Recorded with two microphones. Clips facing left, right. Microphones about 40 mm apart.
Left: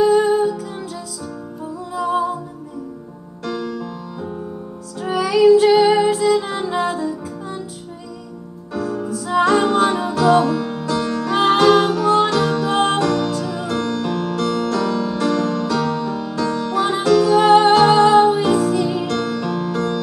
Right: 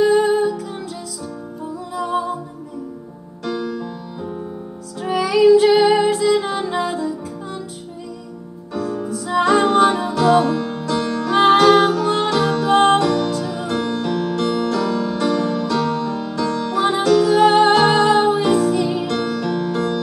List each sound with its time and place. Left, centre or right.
0.0 s music: centre
1.9 s music: centre
3.4 s music: centre
5.0 s child singing: centre
6.1 s music: centre
8.7 s music: centre
10.2 s music: centre
17.1 s music: centre
17.4 s music: centre